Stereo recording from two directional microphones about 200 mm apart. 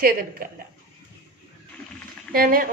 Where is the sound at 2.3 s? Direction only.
45° right (ahead or behind).